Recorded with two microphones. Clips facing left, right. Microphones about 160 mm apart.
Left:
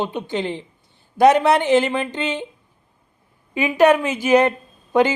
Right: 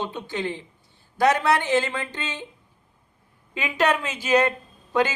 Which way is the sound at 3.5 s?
10° left (ahead or behind).